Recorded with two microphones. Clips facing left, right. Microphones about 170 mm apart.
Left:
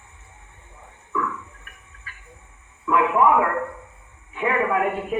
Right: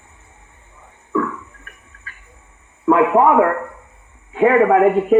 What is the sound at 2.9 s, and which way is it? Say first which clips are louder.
A man's voice: right 5 dB; 40° right (ahead or behind).